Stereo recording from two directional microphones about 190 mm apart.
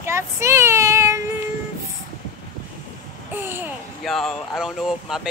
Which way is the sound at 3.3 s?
10° right (ahead or behind).